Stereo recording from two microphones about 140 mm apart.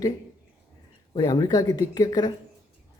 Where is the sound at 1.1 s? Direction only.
30° left (ahead or behind).